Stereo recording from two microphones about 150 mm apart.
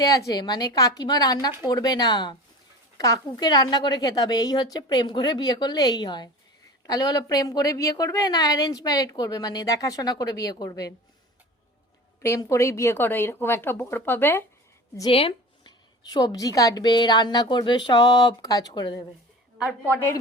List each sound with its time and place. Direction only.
0.0 s a woman's voice: 20° left (ahead or behind)
12.2 s speech: 20° left (ahead or behind)
15.1 s a sound: 40° left (ahead or behind)
16.0 s a woman's voice: 25° left (ahead or behind)
19.6 s speech: 15° left (ahead or behind)